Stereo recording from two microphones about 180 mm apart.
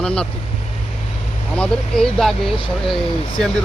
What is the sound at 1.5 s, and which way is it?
Speech, 5° left (ahead or behind).